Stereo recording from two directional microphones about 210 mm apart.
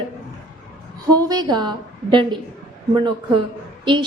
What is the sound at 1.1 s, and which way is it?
A woman's voice, 20° right (ahead or behind).